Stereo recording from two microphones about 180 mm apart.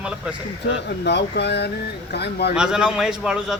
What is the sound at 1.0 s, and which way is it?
Speech, 70° left (ahead or behind).